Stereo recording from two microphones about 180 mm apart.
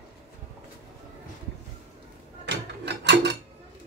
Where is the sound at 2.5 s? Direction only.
75° right (ahead or behind).